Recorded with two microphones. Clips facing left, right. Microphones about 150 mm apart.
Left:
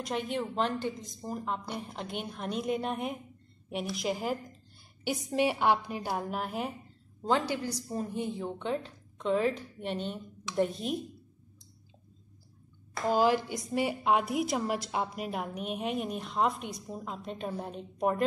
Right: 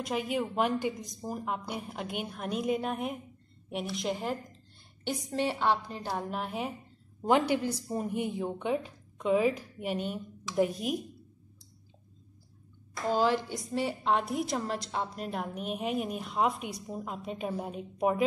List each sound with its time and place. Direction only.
0.0 s a woman's voice: 5° right (ahead or behind)
7.2 s a woman's voice: 15° right (ahead or behind)
13.1 s a woman's voice: 10° left (ahead or behind); by 18.2 s 5° right (ahead or behind)